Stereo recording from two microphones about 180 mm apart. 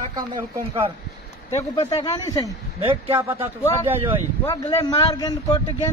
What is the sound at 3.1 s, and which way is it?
Speech, 10° right (ahead or behind).